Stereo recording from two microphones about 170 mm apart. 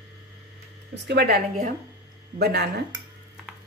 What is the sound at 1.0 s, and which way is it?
Speech, 70° right (ahead or behind).